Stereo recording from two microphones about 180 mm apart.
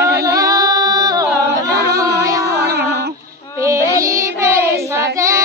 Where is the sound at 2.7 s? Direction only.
65° right (ahead or behind).